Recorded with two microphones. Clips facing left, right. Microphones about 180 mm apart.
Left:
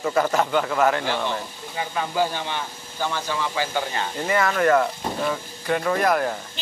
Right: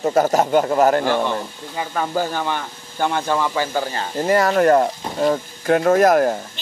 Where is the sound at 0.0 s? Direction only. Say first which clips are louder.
Right 5 dB; 40° right (ahead or behind).